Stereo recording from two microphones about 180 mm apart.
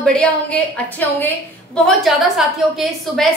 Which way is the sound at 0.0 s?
5° left (ahead or behind).